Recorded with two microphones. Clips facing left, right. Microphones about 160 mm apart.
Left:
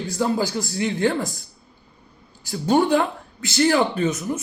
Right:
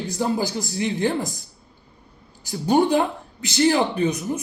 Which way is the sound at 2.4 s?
20° right (ahead or behind).